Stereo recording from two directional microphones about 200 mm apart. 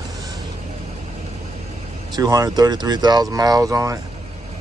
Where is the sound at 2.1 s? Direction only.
20° right (ahead or behind).